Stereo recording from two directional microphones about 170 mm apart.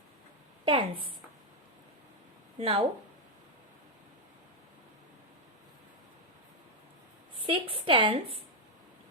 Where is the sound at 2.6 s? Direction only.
30° right (ahead or behind).